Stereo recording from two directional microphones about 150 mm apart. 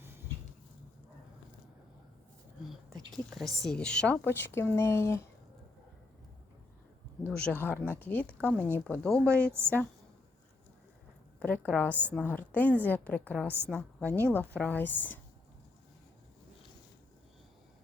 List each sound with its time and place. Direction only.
3.2 s a woman's voice: centre (ahead or behind); by 5.2 s 20° left (ahead or behind)
7.3 s a sound: 10° left (ahead or behind)
7.6 s speech: 15° left (ahead or behind)
9.2 s a woman's voice: 15° right (ahead or behind)
11.3 s a woman's voice: 10° left (ahead or behind)